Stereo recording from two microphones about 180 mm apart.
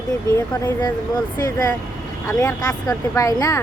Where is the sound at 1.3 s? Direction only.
20° left (ahead or behind).